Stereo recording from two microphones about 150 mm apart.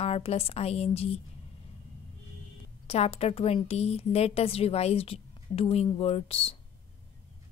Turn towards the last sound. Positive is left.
turn(degrees=40)  # may be behind; listen again after turning